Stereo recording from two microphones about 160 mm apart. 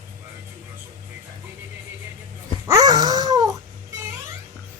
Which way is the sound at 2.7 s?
25° right (ahead or behind).